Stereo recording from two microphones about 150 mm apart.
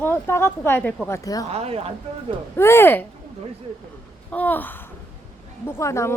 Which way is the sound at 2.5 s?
15° left (ahead or behind).